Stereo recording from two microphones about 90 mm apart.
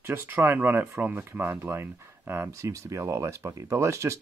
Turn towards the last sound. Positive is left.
turn(degrees=-35)  # may be behind; listen again after turning